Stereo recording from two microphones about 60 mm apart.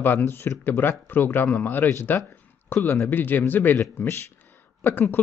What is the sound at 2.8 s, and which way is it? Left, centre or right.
Speech, left.